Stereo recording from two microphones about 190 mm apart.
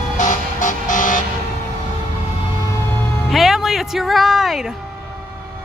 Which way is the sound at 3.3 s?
Centre (ahead or behind).